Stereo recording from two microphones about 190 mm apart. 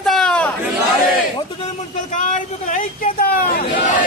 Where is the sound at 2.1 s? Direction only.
40° left (ahead or behind).